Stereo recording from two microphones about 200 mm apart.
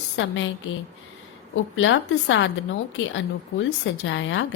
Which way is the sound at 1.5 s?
70° left (ahead or behind).